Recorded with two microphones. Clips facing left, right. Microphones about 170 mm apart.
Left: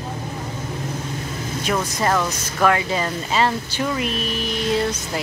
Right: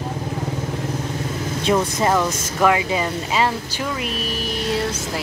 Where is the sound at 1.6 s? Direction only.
30° right (ahead or behind).